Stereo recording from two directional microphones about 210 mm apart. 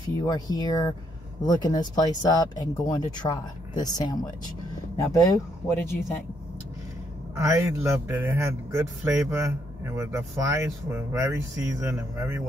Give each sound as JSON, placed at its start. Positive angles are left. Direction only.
{"t": 0.1, "sound": "speech", "side_deg": 15}
{"t": 7.3, "sound": "speech", "side_deg": -15}